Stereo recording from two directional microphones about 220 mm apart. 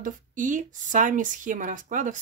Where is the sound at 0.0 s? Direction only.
35° right (ahead or behind).